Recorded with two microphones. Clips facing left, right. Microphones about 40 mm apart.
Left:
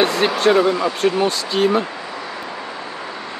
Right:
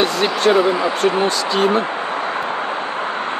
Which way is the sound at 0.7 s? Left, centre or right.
Right.